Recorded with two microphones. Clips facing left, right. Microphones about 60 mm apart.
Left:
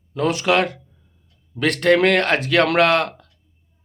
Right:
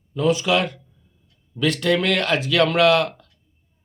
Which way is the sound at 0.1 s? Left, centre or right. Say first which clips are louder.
Left 1 dB; left.